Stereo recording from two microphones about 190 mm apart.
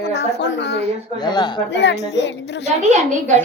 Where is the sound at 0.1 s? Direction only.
65° left (ahead or behind).